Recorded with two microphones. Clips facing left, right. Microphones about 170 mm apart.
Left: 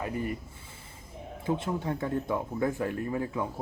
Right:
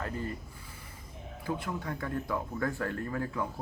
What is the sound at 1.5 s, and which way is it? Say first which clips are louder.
Speech: left 5 dB; 25° left (ahead or behind).